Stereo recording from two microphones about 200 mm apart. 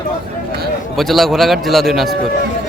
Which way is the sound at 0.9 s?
Centre (ahead or behind).